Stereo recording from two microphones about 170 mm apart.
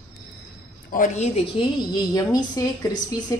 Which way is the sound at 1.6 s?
25° left (ahead or behind).